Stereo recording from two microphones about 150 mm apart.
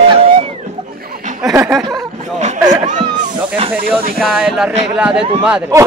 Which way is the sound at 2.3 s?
50° right (ahead or behind).